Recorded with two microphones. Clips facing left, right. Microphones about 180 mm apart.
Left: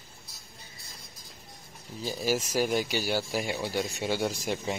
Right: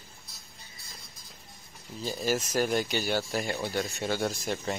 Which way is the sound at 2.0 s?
10° left (ahead or behind).